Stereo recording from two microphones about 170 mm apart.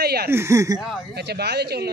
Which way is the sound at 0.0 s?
70° right (ahead or behind).